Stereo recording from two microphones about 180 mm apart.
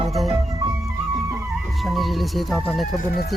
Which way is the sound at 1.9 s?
Centre (ahead or behind).